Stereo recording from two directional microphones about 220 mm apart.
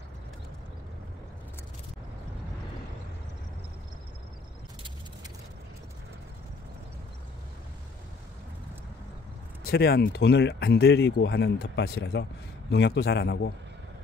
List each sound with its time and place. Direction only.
9.7 s speech: 45° left (ahead or behind)